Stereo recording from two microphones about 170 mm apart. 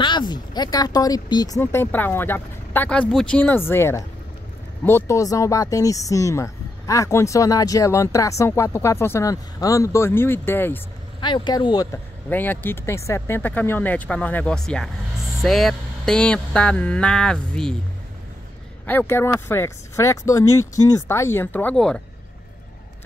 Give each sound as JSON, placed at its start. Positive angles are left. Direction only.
{"t": 0.0, "sound": "speech", "side_deg": 25}
{"t": 11.1, "sound": "speech", "side_deg": 25}
{"t": 12.3, "sound": "speech", "side_deg": 10}
{"t": 18.9, "sound": "speech", "side_deg": 10}